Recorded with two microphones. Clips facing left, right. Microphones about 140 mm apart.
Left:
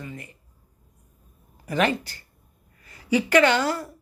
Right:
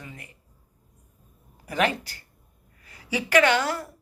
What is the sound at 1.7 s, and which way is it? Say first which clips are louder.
A woman's voice: left 2 dB; 10° right (ahead or behind).